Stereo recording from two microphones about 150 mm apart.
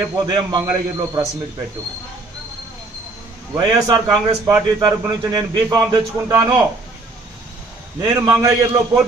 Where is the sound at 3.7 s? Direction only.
25° right (ahead or behind).